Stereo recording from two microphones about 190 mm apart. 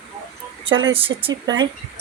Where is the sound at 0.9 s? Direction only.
30° right (ahead or behind).